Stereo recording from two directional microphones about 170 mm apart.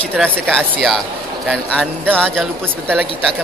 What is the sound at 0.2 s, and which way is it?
Speech, 5° left (ahead or behind).